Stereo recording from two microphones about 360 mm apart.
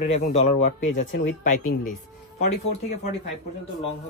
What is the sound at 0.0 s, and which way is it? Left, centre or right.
Speech, centre.